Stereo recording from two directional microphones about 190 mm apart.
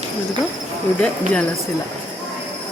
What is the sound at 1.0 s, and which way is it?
Speech, 5° left (ahead or behind).